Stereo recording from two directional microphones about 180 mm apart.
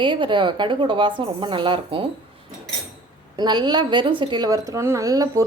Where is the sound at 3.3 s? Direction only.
25° right (ahead or behind).